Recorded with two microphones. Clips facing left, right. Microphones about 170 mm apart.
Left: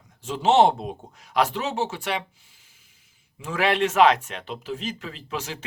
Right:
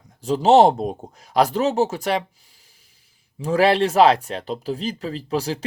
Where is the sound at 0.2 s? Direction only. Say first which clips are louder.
Right 5 dB; 40° right (ahead or behind).